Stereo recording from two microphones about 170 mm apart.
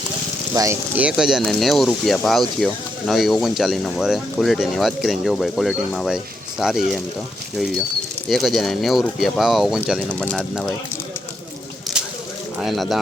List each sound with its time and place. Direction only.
0.5 s speech: 20° right (ahead or behind)
0.9 s speech: 5° right (ahead or behind)
8.3 s speech: centre (ahead or behind)
11.9 s a sound: 5° right (ahead or behind)
12.5 s speech: centre (ahead or behind)